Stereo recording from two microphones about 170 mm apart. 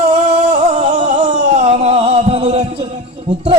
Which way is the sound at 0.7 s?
40° right (ahead or behind).